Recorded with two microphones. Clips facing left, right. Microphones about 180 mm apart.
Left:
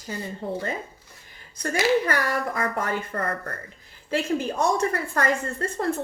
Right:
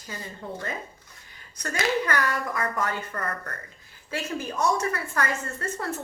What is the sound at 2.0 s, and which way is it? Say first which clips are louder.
A woman's voice: left 2 dB; 30° left (ahead or behind).